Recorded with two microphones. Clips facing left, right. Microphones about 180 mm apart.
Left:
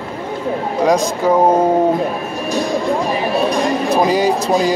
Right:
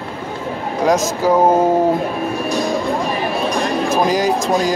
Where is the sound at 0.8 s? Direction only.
Centre (ahead or behind).